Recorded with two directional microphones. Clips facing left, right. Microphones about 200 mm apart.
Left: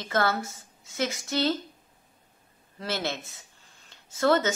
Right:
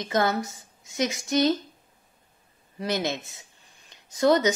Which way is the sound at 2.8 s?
15° right (ahead or behind).